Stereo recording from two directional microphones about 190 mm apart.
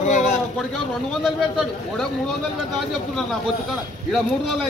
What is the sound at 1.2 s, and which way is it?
Speech, centre (ahead or behind).